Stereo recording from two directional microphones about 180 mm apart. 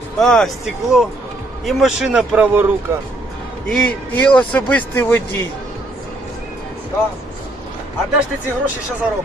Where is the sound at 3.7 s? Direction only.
5° left (ahead or behind).